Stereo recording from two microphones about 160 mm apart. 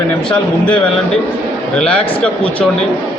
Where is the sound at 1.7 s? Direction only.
5° left (ahead or behind).